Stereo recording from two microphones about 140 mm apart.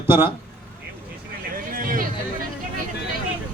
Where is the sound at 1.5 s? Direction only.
85° right.